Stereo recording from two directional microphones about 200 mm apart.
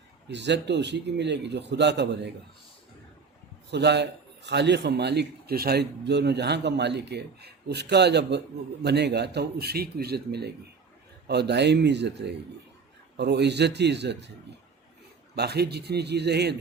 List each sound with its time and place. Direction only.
0.3 s a man's voice: 60° right (ahead or behind)
3.7 s a man's voice: 55° right (ahead or behind)
15.4 s a man's voice: 55° right (ahead or behind)